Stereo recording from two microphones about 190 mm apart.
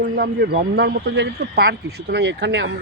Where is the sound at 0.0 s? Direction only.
55° right (ahead or behind).